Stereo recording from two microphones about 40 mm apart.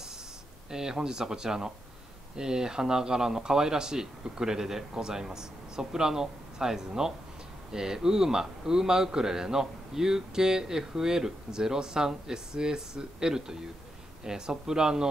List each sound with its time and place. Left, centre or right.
0.7 s a man's voice: centre